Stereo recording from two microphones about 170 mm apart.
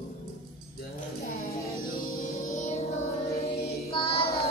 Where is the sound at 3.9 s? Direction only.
35° left (ahead or behind).